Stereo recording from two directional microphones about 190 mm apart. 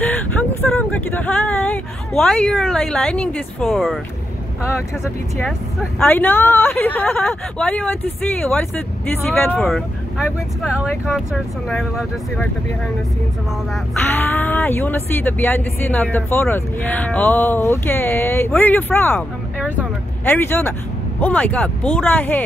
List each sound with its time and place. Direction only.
0.0 s speech: 10° left (ahead or behind)
4.6 s speech: 15° left (ahead or behind)
5.4 s speech: centre (ahead or behind)
14.1 s speech: 10° left (ahead or behind)
20.2 s speech: 10° left (ahead or behind)